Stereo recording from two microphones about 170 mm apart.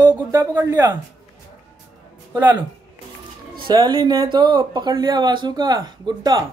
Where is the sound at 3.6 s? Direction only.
25° right (ahead or behind).